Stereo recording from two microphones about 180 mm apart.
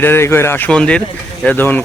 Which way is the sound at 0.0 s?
15° left (ahead or behind).